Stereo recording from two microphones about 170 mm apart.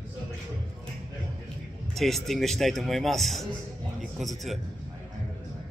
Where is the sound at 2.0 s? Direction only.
Centre (ahead or behind).